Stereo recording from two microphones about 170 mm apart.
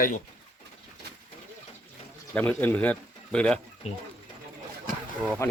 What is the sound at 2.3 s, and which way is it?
Speech, 10° left (ahead or behind).